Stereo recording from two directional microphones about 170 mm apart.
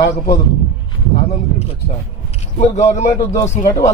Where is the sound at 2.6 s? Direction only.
40° left (ahead or behind).